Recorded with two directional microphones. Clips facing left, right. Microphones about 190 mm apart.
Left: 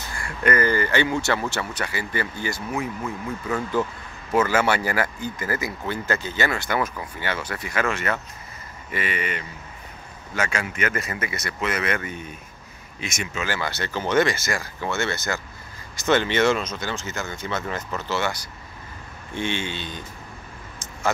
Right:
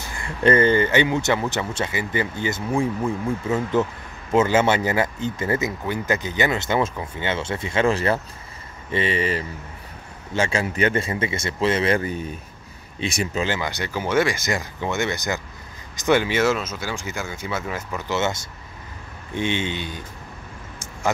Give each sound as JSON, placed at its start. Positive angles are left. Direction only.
{"t": 0.2, "sound": "speech", "side_deg": -25}
{"t": 13.5, "sound": "speech", "side_deg": -15}